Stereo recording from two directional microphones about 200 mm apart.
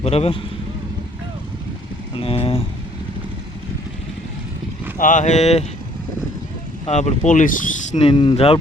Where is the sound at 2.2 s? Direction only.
30° left (ahead or behind).